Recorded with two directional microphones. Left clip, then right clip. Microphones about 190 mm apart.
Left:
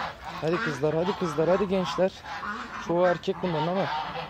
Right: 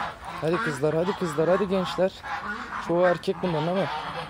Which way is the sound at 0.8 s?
10° right (ahead or behind).